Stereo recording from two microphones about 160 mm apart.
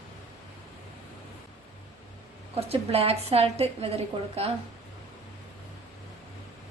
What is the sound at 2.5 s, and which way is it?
A woman's voice, 40° right (ahead or behind).